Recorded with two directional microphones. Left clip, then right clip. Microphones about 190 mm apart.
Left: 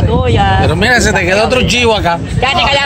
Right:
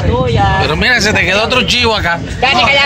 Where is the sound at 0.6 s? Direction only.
20° left (ahead or behind).